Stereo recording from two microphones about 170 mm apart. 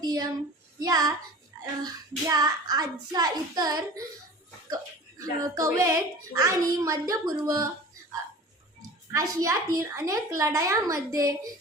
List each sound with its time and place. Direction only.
0.0 s speech: 25° right (ahead or behind)
9.1 s speech: 20° right (ahead or behind)